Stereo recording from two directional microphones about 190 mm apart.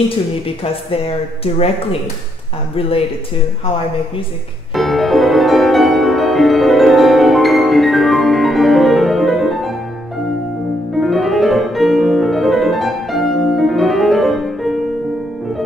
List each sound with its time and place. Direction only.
0.9 s speech: 30° left (ahead or behind)
4.7 s music: centre (ahead or behind)
11.0 s piano: centre (ahead or behind)